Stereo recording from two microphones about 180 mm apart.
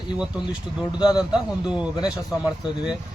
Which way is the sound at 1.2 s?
5° right (ahead or behind).